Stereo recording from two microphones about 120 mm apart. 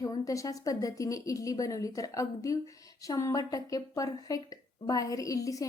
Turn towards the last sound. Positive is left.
turn(degrees=30)  # may be behind; listen again after turning